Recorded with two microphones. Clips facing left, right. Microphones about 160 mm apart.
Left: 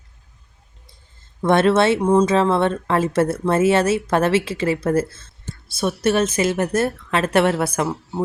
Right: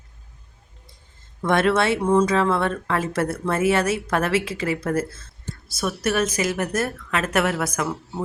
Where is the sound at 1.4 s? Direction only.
25° left (ahead or behind).